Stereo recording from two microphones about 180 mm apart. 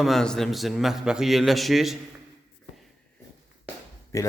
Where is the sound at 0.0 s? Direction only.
Centre (ahead or behind).